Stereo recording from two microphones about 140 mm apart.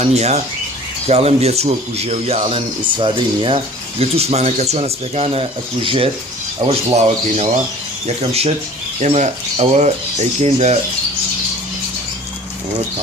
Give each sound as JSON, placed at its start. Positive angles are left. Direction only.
{"t": 0.0, "sound": "speech", "side_deg": -50}